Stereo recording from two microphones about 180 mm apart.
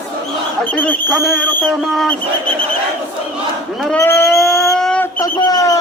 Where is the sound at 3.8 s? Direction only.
5° left (ahead or behind).